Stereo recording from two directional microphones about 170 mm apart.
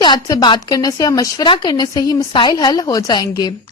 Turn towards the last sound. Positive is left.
turn(degrees=25)  # may be behind; listen again after turning